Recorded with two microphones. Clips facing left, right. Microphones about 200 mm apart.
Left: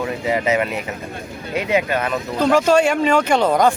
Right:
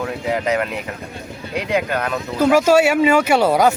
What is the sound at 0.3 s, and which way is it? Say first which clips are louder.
Speech: left 1 dB; 5° left (ahead or behind).